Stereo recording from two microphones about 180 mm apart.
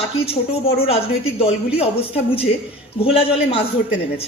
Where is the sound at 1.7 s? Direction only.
30° left (ahead or behind).